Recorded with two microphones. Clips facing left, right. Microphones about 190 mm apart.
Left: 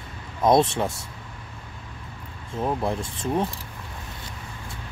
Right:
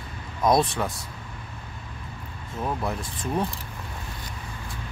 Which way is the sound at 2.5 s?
30° left (ahead or behind).